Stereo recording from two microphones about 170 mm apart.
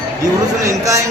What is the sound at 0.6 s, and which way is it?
Speech, 20° right (ahead or behind).